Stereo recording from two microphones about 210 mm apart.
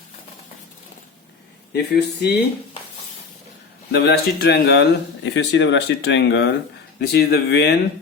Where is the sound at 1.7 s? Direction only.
50° left (ahead or behind).